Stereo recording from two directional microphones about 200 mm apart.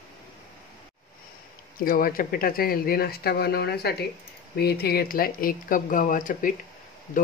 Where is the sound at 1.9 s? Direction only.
45° left (ahead or behind).